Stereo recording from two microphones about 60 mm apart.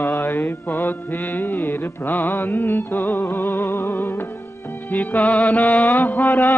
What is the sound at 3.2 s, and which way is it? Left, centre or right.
Music, left.